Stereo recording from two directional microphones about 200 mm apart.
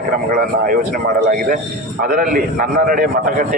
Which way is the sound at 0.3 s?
45° right (ahead or behind).